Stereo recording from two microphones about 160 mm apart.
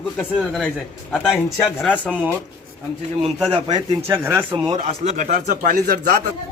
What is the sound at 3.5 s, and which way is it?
Speech, 30° right (ahead or behind).